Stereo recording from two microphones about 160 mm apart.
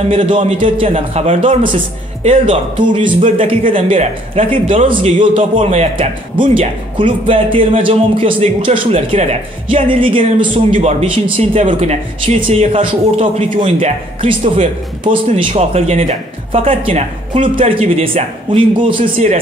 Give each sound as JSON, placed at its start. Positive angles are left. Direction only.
{"t": 0.1, "sound": "speech", "side_deg": -35}
{"t": 5.3, "sound": "speech", "side_deg": -40}
{"t": 10.5, "sound": "speech", "side_deg": -45}
{"t": 15.5, "sound": "speech", "side_deg": -40}